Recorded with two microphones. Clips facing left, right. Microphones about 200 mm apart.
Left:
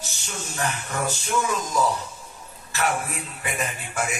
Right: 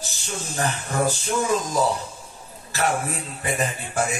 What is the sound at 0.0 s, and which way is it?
A man's voice, 35° right (ahead or behind).